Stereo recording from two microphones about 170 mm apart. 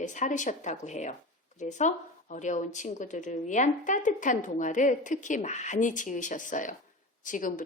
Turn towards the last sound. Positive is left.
turn(degrees=50)  # may be behind; listen again after turning